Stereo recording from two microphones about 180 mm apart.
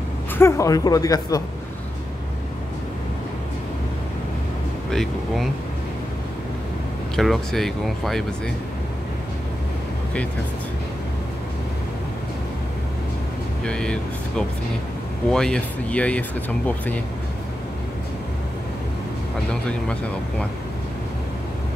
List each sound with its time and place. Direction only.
0.4 s speech: 15° left (ahead or behind)
4.9 s speech: centre (ahead or behind)
7.2 s speech: centre (ahead or behind)
13.7 s speech: 5° left (ahead or behind)
19.5 s speech: 5° left (ahead or behind)